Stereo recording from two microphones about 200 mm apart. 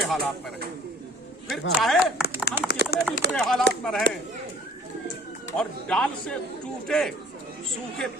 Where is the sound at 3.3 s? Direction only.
Centre (ahead or behind).